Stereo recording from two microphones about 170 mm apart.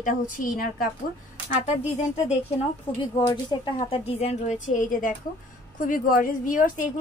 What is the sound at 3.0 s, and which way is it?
A woman's voice, 25° left (ahead or behind).